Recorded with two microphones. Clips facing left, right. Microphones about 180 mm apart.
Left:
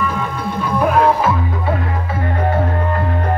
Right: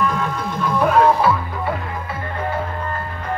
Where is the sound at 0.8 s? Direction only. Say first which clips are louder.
Even; 20° left (ahead or behind).